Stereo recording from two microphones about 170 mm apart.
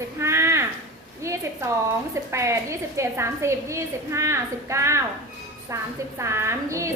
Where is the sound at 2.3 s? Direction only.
15° right (ahead or behind).